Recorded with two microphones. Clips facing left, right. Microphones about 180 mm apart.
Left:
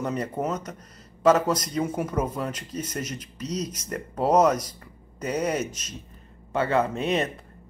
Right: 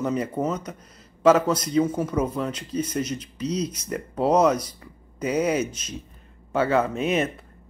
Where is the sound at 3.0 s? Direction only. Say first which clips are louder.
Right 6 dB; 45° left (ahead or behind).